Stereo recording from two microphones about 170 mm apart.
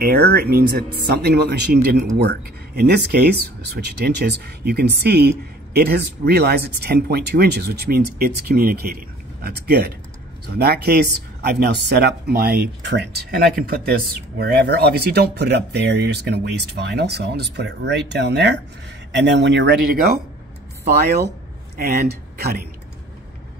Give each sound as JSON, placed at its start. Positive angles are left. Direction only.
{"t": 0.0, "sound": "speech", "side_deg": -65}
{"t": 13.3, "sound": "speech", "side_deg": -60}
{"t": 21.7, "sound": "speech", "side_deg": -60}